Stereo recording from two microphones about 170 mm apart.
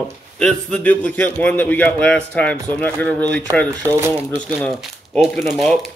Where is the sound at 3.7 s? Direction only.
20° right (ahead or behind).